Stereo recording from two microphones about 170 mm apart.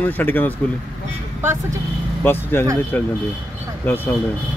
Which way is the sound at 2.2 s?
15° left (ahead or behind).